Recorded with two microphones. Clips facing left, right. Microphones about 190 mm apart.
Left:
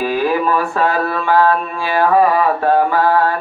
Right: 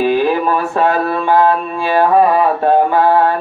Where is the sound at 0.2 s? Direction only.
20° right (ahead or behind).